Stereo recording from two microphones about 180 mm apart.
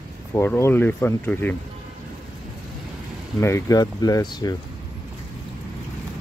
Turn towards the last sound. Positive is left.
turn(degrees=20)  # may be behind; listen again after turning